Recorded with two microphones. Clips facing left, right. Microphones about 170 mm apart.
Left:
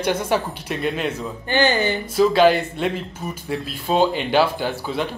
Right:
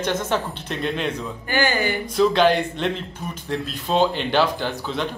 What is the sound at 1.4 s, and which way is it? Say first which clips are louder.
Speech: left 3 dB; 20° left (ahead or behind).